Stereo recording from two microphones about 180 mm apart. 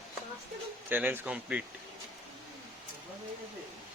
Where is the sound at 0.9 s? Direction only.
10° right (ahead or behind).